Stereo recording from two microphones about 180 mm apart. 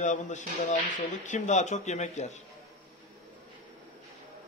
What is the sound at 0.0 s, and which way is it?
Speech, 40° left (ahead or behind).